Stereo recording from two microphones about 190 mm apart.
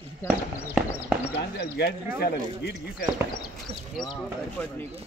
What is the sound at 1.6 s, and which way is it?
Speech, 60° left (ahead or behind).